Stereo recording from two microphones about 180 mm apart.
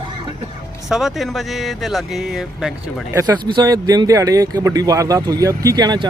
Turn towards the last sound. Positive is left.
turn(degrees=-20)  # may be behind; listen again after turning